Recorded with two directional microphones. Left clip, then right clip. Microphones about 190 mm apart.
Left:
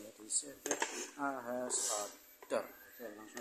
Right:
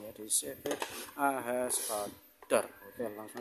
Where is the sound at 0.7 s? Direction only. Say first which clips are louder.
Right 3 dB; 75° right (ahead or behind).